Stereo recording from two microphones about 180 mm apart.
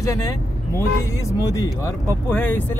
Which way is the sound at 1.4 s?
15° left (ahead or behind).